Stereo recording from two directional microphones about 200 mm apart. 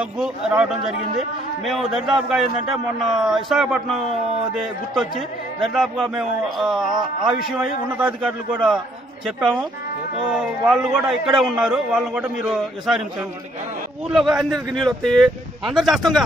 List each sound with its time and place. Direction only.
0.0 s speech: 5° right (ahead or behind)
6.9 s speech: 20° right (ahead or behind)
8.0 s speech: 5° right (ahead or behind)
14.0 s speech: centre (ahead or behind)